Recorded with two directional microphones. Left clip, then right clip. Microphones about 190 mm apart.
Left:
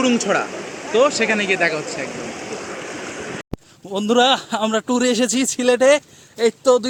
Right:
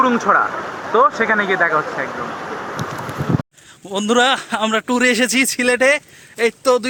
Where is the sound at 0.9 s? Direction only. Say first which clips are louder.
Right 2 dB; 25° left (ahead or behind).